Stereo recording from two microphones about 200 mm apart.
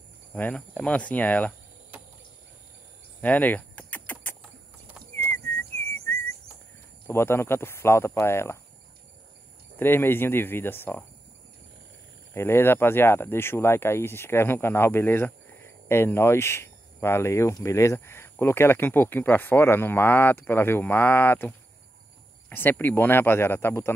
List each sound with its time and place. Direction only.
0.3 s speech: 5° left (ahead or behind)
3.2 s a sound: 10° left (ahead or behind)
7.1 s speech: 10° left (ahead or behind)
9.8 s speech: 10° left (ahead or behind)
12.4 s speech: 10° left (ahead or behind)